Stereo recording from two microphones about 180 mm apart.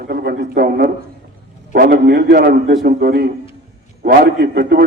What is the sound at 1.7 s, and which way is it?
A man's voice, 60° right (ahead or behind).